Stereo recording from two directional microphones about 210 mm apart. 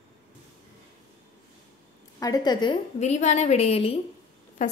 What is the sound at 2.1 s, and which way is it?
A woman's voice, 15° left (ahead or behind).